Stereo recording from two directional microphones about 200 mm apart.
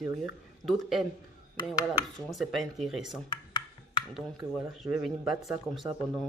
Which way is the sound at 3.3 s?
25° left (ahead or behind).